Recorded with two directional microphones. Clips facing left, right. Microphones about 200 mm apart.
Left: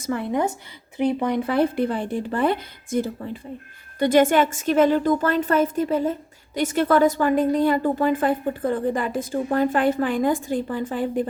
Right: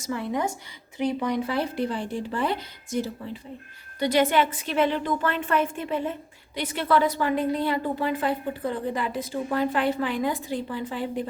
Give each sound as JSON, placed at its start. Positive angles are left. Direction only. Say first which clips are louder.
{"t": 0.0, "sound": "a woman's voice", "louder": "left 4 dB", "side_deg": 55}